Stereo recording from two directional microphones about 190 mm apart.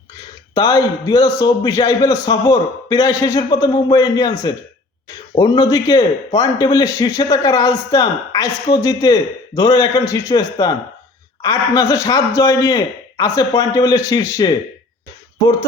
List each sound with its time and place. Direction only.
0.5 s a man's voice: 20° left (ahead or behind)